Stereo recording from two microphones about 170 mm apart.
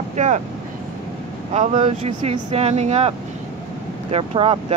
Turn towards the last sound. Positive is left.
turn(degrees=-35)  # may be behind; listen again after turning